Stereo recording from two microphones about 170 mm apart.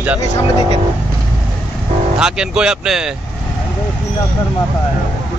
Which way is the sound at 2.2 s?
5° right (ahead or behind).